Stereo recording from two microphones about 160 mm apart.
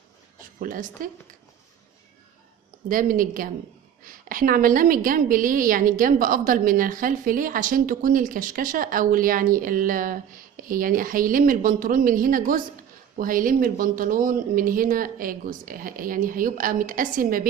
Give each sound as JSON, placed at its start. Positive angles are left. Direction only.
{"t": 0.6, "sound": "a woman's voice", "side_deg": -60}
{"t": 2.9, "sound": "a woman's voice", "side_deg": -60}